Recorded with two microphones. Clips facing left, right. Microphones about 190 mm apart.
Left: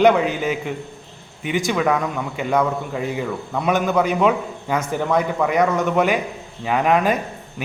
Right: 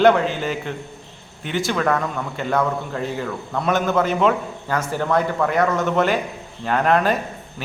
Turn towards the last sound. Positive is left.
turn(degrees=10)  # may be behind; listen again after turning